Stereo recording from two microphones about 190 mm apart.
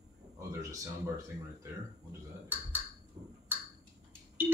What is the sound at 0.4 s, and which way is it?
Speech, 15° right (ahead or behind).